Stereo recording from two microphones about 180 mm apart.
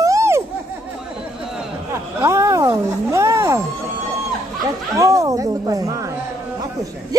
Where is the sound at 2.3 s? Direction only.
15° right (ahead or behind).